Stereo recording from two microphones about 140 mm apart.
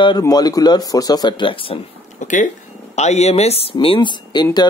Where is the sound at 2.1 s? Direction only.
60° left (ahead or behind).